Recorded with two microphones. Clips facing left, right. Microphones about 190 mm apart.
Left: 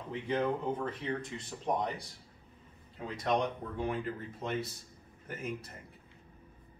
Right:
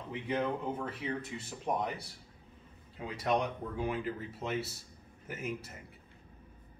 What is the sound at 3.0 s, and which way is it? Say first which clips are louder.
Speech: even; 10° right (ahead or behind).